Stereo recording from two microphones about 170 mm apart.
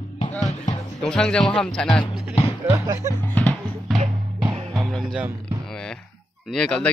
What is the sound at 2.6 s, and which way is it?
Speech, 15° right (ahead or behind).